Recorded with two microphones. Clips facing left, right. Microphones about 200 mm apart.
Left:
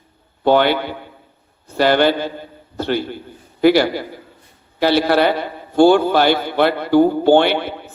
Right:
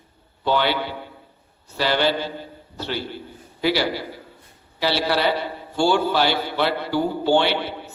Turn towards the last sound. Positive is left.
turn(degrees=50)  # may be behind; listen again after turning